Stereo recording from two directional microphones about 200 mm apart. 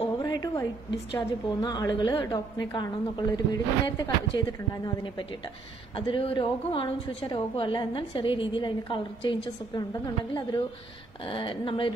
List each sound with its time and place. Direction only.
0.2 s a sound: 20° left (ahead or behind)
1.1 s a woman's voice: 20° left (ahead or behind)
11.2 s a woman's voice: 25° left (ahead or behind)